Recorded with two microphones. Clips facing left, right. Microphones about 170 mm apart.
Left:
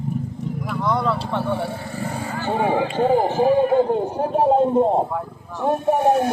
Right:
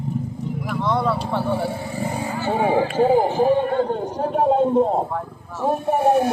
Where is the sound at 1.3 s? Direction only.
5° right (ahead or behind).